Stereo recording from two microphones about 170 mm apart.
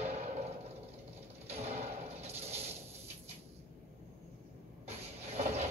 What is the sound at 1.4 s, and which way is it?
Music, 40° right (ahead or behind).